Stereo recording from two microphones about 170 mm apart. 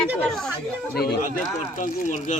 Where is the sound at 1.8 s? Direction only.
45° left (ahead or behind).